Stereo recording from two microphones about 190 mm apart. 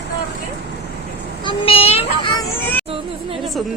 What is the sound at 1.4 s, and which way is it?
Speech, 30° left (ahead or behind).